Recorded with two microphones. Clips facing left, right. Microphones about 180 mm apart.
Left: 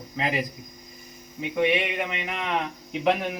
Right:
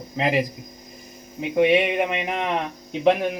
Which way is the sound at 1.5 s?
25° right (ahead or behind).